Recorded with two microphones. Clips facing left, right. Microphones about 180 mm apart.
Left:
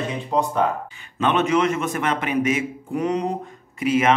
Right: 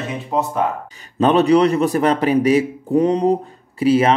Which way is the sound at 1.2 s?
35° right (ahead or behind).